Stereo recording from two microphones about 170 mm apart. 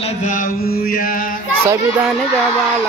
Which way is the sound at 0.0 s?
40° left (ahead or behind).